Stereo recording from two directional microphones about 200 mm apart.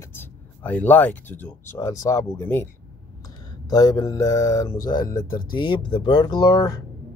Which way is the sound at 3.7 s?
20° left (ahead or behind).